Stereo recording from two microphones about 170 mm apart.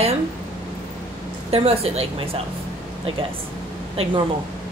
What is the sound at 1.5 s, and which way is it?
Speech, 35° right (ahead or behind).